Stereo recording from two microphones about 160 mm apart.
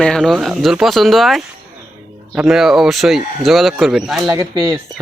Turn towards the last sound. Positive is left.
turn(degrees=-25)  # may be behind; listen again after turning